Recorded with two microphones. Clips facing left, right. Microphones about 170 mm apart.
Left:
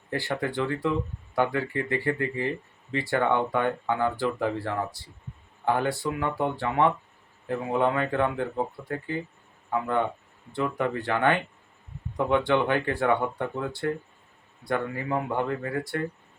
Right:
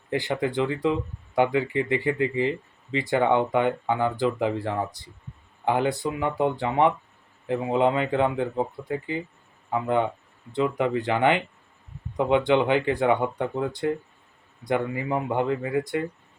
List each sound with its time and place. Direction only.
0.1 s speech: 20° right (ahead or behind)
12.5 s speech: 20° right (ahead or behind)